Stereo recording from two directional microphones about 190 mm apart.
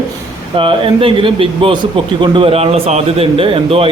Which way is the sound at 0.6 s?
25° right (ahead or behind).